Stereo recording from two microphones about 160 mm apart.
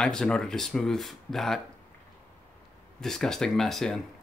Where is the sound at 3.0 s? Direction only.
5° left (ahead or behind).